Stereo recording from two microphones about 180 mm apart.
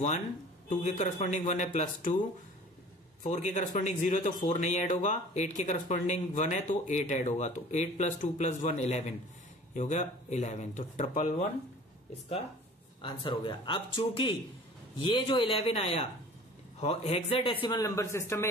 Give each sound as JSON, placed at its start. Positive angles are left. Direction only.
{"t": 0.7, "sound": "speech", "side_deg": 40}
{"t": 3.3, "sound": "speech", "side_deg": 40}
{"t": 13.0, "sound": "a man's voice", "side_deg": 30}